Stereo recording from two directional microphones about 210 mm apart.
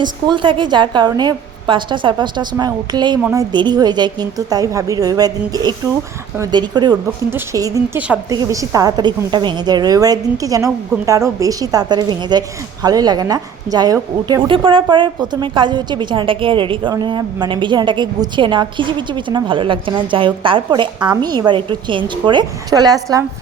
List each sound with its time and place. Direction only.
0.0 s a woman's voice: 20° right (ahead or behind)